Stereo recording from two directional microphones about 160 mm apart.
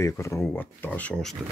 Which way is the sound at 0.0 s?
20° left (ahead or behind).